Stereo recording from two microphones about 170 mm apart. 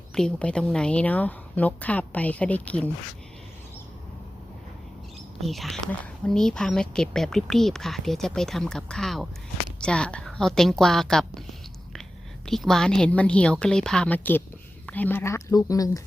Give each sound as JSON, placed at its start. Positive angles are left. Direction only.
{"t": 0.1, "sound": "a woman's voice", "side_deg": 5}
{"t": 5.4, "sound": "speech", "side_deg": 0}
{"t": 12.5, "sound": "speech", "side_deg": 0}